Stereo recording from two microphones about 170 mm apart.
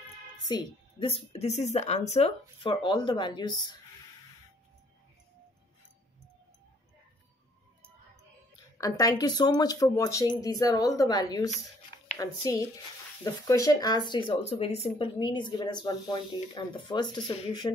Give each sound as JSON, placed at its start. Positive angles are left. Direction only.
{"t": 0.5, "sound": "speech", "side_deg": 25}
{"t": 8.7, "sound": "speech", "side_deg": 20}